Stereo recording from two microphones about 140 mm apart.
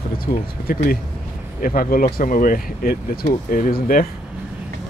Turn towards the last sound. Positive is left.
turn(degrees=85)